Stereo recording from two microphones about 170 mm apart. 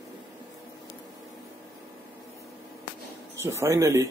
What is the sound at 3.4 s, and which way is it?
Speech, 15° right (ahead or behind).